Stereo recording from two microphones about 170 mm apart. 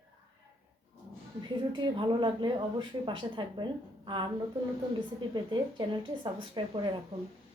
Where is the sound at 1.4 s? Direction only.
30° right (ahead or behind).